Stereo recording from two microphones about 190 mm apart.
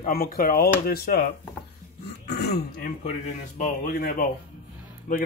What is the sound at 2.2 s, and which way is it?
Throat clearing, 55° left (ahead or behind).